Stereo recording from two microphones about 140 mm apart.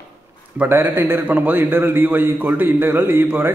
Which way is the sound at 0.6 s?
15° right (ahead or behind).